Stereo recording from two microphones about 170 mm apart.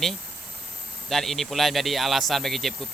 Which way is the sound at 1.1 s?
Centre (ahead or behind).